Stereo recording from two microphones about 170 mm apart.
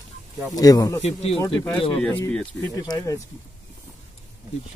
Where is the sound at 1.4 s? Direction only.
15° left (ahead or behind).